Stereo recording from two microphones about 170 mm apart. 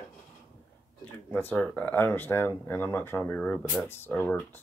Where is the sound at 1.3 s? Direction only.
10° left (ahead or behind).